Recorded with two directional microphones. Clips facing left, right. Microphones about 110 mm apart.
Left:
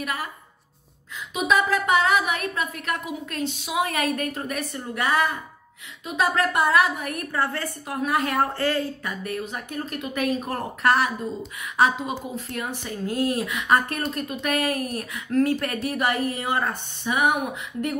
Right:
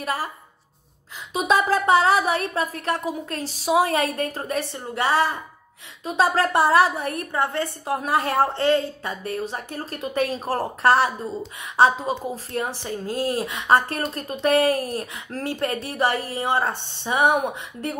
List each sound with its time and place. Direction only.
0.0 s speech: 30° right (ahead or behind)
1.3 s speech: 35° right (ahead or behind)